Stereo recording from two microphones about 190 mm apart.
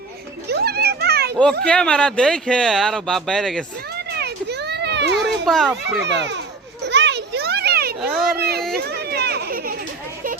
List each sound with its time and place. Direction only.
0.5 s children playing: 55° right (ahead or behind)
1.6 s speech: 5° left (ahead or behind)
4.1 s children playing: 60° right (ahead or behind)
5.1 s baby cry: centre (ahead or behind)
6.0 s a child's voice: 70° right (ahead or behind)
6.8 s children playing: 65° right (ahead or behind)
8.0 s a sound: centre (ahead or behind)
8.4 s speech: 55° right (ahead or behind)
8.8 s children playing: 55° right (ahead or behind)